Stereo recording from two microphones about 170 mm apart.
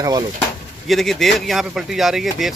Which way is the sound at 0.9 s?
Centre (ahead or behind).